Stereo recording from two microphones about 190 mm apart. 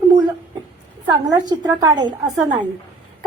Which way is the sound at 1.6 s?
20° right (ahead or behind).